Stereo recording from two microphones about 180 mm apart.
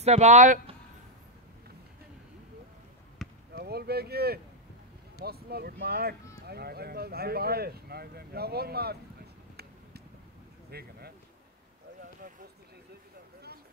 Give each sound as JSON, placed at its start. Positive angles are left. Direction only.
{"t": 0.0, "sound": "speech", "side_deg": -40}
{"t": 3.2, "sound": "basketball bounce", "side_deg": 0}
{"t": 3.5, "sound": "speech", "side_deg": -60}
{"t": 10.7, "sound": "a sound", "side_deg": -60}